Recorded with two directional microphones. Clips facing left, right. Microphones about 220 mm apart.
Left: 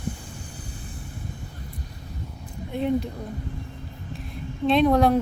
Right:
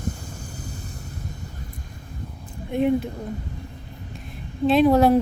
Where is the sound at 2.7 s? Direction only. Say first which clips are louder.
Right 5 dB; 15° right (ahead or behind).